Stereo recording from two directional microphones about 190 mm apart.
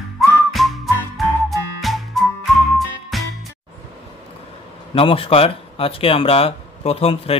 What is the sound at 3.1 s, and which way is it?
Music, centre (ahead or behind).